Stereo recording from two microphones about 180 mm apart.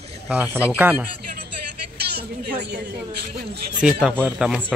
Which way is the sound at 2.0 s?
60° right (ahead or behind).